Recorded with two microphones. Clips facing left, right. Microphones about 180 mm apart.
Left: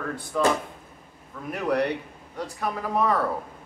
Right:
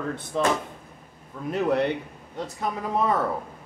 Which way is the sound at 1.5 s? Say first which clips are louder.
Right 2 dB; 25° right (ahead or behind).